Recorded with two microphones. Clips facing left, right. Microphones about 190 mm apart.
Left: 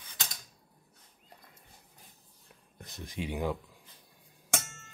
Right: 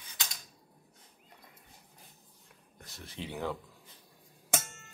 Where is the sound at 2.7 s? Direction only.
20° left (ahead or behind).